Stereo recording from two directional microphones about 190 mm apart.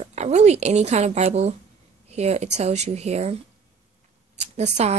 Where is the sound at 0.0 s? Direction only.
35° right (ahead or behind).